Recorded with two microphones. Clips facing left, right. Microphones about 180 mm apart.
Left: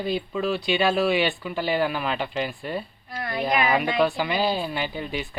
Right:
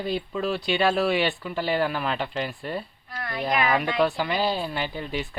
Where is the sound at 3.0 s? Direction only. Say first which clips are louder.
Left 3 dB; 25° left (ahead or behind).